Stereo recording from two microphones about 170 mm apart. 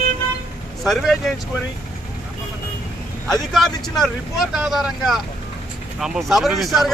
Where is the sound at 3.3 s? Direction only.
Centre (ahead or behind).